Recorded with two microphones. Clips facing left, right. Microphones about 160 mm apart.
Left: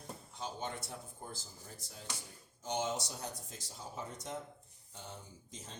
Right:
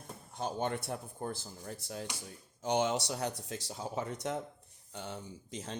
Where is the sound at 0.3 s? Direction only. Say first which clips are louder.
Right 8 dB; 60° right (ahead or behind).